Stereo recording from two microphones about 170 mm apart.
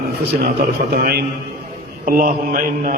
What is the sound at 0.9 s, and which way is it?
Speech, 65° right (ahead or behind).